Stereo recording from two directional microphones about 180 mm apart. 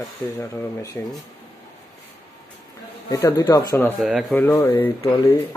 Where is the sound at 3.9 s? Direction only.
Centre (ahead or behind).